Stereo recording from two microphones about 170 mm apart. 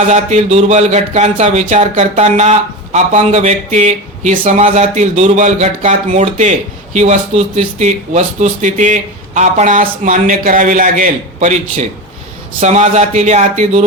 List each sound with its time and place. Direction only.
0.1 s a man's voice: 45° right (ahead or behind)